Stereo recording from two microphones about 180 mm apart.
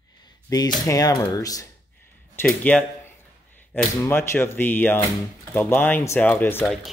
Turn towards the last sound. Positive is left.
turn(degrees=10)  # may be behind; listen again after turning